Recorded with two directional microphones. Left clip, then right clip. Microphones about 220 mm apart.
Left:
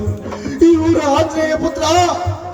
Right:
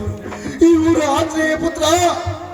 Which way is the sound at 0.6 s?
50° right (ahead or behind).